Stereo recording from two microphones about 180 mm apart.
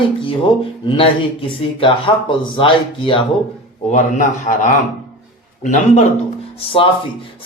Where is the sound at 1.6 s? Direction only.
30° left (ahead or behind).